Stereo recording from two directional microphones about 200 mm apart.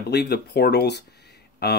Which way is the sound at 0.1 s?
55° left (ahead or behind).